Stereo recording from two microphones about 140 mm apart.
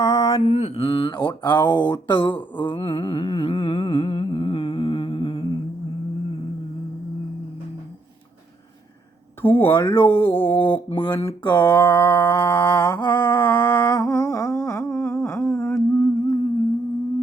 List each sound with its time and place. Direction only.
0.0 s mantra: 20° left (ahead or behind)
0.4 s speech: 55° left (ahead or behind); by 1.5 s 30° left (ahead or behind)
1.5 s mantra: 15° left (ahead or behind)
1.9 s speech: 35° left (ahead or behind)
2.6 s humming: 35° left (ahead or behind)
9.4 s mantra: 15° left (ahead or behind)
10.8 s speech: 35° left (ahead or behind)
11.7 s mantra: 15° left (ahead or behind)
12.5 s speech: 30° left (ahead or behind)
12.8 s mantra: 10° left (ahead or behind)
13.8 s humming: 25° left (ahead or behind)